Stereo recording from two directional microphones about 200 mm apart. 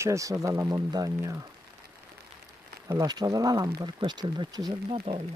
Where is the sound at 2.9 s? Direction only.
20° right (ahead or behind).